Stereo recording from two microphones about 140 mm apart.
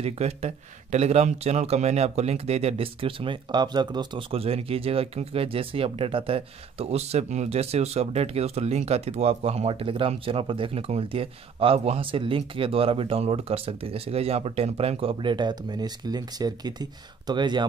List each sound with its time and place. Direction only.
0.0 s speech: 50° right (ahead or behind); by 17.6 s 30° right (ahead or behind)